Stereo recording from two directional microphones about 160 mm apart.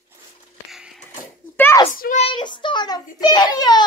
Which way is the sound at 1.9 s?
65° left (ahead or behind).